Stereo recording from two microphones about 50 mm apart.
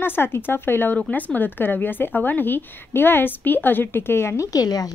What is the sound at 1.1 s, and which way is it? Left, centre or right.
A woman's voice, left.